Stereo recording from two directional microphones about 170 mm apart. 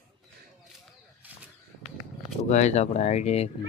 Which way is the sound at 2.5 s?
45° left (ahead or behind).